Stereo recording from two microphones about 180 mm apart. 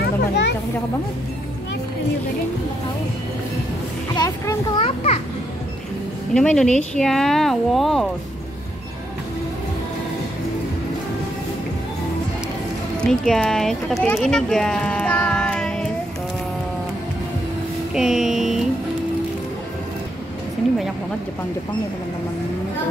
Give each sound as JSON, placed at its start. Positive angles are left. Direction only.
{"t": 0.0, "sound": "children playing", "side_deg": 65}
{"t": 4.1, "sound": "a child's voice", "side_deg": 20}
{"t": 6.3, "sound": "speech", "side_deg": 5}
{"t": 13.0, "sound": "speech", "side_deg": 5}
{"t": 14.1, "sound": "child singing", "side_deg": 5}
{"t": 17.9, "sound": "speech", "side_deg": 0}